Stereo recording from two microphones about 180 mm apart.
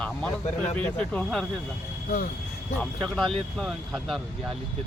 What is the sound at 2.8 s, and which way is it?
Speech, 5° left (ahead or behind).